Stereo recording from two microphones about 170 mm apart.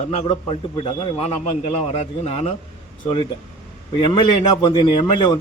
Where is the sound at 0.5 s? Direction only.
35° left (ahead or behind).